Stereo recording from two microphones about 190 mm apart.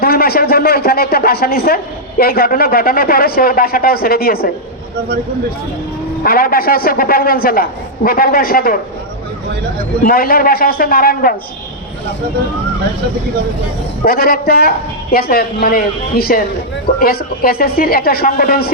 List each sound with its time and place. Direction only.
0.0 s speech: 55° left (ahead or behind)
6.2 s speech: 50° left (ahead or behind)
10.0 s speech: 50° left (ahead or behind)
14.0 s speech: 50° left (ahead or behind)